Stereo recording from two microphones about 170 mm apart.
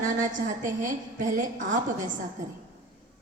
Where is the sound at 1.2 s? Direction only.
50° right (ahead or behind).